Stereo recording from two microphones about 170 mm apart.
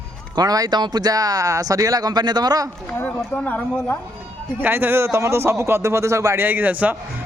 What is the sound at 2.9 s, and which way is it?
Speech, 10° left (ahead or behind).